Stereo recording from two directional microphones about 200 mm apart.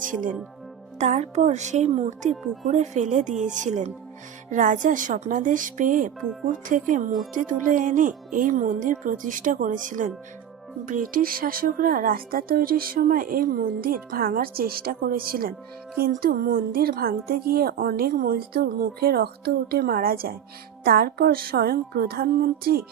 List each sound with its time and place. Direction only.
0.0 s speech: 40° right (ahead or behind)